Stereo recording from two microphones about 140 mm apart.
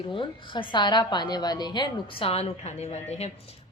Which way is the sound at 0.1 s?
35° left (ahead or behind).